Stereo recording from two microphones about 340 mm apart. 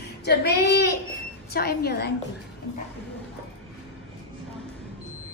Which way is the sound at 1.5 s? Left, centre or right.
Left.